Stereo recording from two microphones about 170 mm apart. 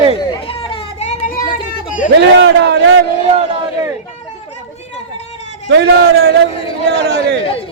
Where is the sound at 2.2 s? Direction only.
80° right.